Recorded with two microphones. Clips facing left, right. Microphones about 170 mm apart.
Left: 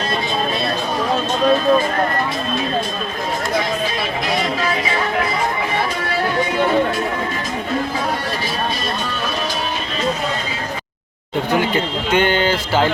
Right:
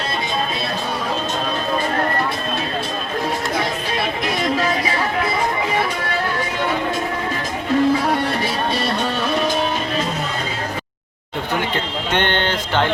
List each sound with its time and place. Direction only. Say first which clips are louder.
12.1 s speech: left 4 dB; 5° left (ahead or behind)